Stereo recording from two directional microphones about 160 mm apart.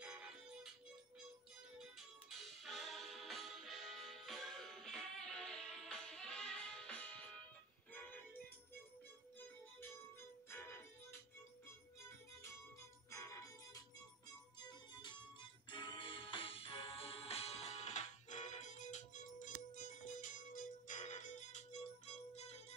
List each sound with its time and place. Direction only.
0.0 s music: 5° right (ahead or behind)
1.8 s music: centre (ahead or behind); by 11.1 s 15° left (ahead or behind)
13.1 s music: 20° left (ahead or behind); by 22.6 s 45° left (ahead or behind)